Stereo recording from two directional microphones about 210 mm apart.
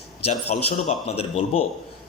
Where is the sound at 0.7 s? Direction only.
30° left (ahead or behind).